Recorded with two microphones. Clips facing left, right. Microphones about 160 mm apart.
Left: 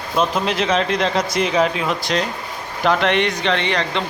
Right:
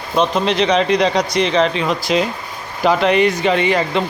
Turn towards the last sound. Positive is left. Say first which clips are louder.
# right 4 dB
turn(degrees=-5)  # may be behind; listen again after turning